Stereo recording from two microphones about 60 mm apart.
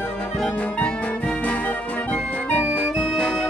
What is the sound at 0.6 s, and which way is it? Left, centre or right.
Music, left.